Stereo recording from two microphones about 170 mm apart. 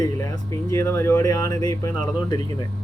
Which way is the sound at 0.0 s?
20° left (ahead or behind).